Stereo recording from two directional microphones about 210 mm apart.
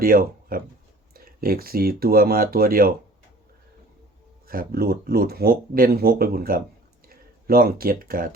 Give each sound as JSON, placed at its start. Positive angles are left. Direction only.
{"t": 0.0, "sound": "speech", "side_deg": -45}
{"t": 4.4, "sound": "speech", "side_deg": -45}